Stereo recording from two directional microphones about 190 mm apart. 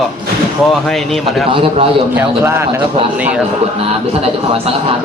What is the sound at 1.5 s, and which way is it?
Speech, 30° right (ahead or behind).